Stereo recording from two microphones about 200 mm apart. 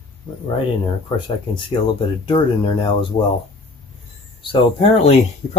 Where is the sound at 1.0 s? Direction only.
25° left (ahead or behind).